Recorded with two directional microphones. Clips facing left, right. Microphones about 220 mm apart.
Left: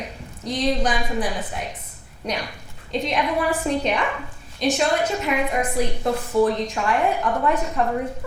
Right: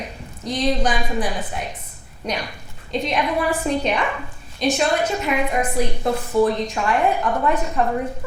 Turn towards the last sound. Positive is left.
turn(degrees=-25)  # may be behind; listen again after turning